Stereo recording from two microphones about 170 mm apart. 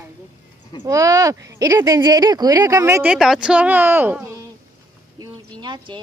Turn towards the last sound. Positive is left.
turn(degrees=-25)  # may be behind; listen again after turning